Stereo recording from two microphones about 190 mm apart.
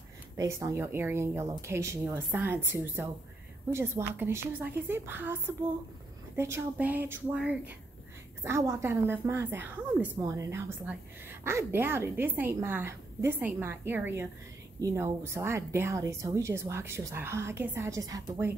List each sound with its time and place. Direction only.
0.4 s a woman's voice: 15° right (ahead or behind)